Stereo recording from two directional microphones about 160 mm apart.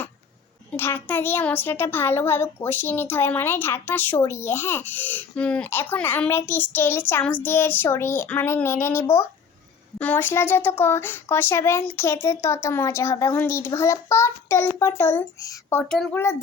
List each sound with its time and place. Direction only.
0.7 s a child's voice: 15° left (ahead or behind)
15.8 s a child's voice: 5° left (ahead or behind)